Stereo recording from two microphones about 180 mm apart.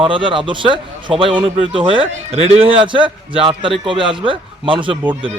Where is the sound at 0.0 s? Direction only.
30° right (ahead or behind).